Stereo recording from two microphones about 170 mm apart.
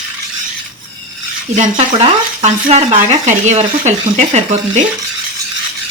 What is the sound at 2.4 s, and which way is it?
Speech, 45° right (ahead or behind).